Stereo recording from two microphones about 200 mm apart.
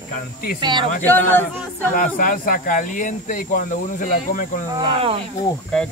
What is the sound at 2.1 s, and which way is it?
Speech, 45° left (ahead or behind).